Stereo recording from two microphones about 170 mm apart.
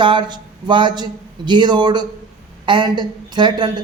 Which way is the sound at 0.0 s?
30° right (ahead or behind).